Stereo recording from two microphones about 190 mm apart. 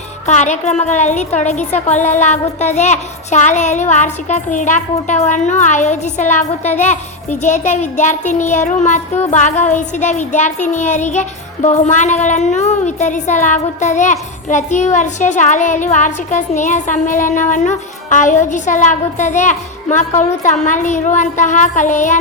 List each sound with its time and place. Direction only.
0.3 s music: 40° left (ahead or behind)